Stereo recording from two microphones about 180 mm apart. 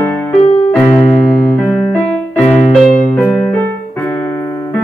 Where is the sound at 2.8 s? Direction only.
45° left (ahead or behind).